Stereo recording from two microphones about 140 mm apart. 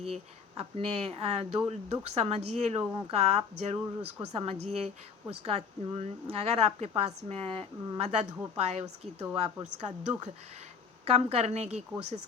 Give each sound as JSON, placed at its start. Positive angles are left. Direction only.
{"t": 0.0, "sound": "a woman's voice", "side_deg": -45}
{"t": 11.0, "sound": "a woman's voice", "side_deg": -45}